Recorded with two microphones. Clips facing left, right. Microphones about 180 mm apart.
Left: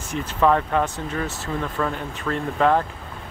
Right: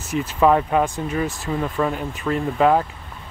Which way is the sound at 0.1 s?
10° right (ahead or behind).